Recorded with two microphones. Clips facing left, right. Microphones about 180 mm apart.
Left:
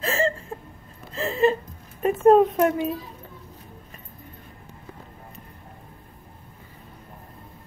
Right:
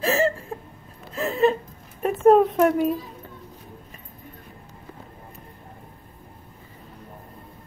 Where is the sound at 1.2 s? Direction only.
Centre (ahead or behind).